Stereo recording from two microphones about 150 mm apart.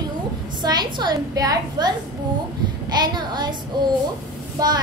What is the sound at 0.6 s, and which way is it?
A woman's voice, 30° right (ahead or behind).